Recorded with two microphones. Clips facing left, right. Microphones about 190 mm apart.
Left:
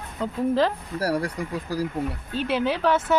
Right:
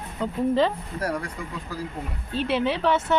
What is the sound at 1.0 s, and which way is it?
Speech, 35° left (ahead or behind).